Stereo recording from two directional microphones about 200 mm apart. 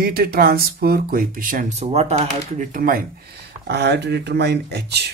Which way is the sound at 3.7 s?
55° right (ahead or behind).